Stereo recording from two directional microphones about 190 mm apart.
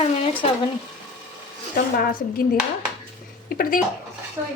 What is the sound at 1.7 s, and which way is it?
Speech, 50° left (ahead or behind).